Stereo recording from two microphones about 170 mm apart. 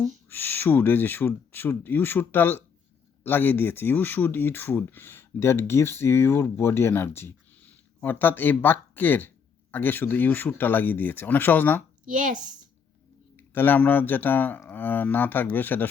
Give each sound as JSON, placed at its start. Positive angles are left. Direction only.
{"t": 0.3, "sound": "speech", "side_deg": 10}
{"t": 12.0, "sound": "speech", "side_deg": -50}
{"t": 13.3, "sound": "speech", "side_deg": 10}